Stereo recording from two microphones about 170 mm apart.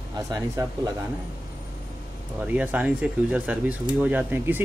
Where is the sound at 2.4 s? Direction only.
10° right (ahead or behind).